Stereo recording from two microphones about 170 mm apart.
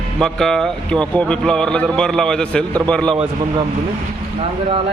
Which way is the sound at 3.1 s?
30° right (ahead or behind).